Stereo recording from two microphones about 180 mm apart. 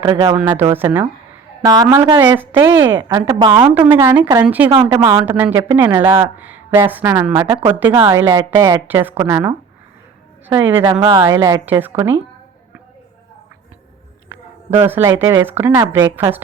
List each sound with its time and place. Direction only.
0.0 s a woman's voice: 25° right (ahead or behind)
0.3 s a woman's voice: 10° right (ahead or behind); by 3.7 s 25° right (ahead or behind)
3.8 s speech: 10° right (ahead or behind)
4.9 s a woman's voice: 20° right (ahead or behind)
11.0 s speech: 25° right (ahead or behind)
14.8 s speech: 10° right (ahead or behind)